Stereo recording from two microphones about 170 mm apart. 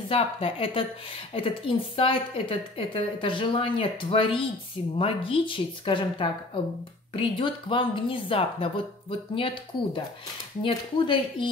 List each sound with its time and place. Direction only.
0.1 s a woman's voice: 35° left (ahead or behind)